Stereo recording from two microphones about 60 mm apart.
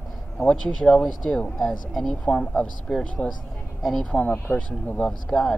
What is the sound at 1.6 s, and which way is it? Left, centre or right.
Speech, centre.